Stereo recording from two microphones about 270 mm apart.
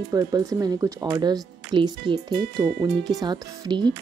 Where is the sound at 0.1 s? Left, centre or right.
Centre.